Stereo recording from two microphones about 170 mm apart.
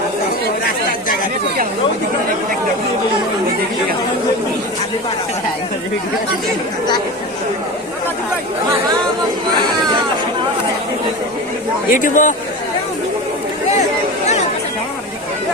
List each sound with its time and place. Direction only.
11.9 s a man's voice: 50° left (ahead or behind)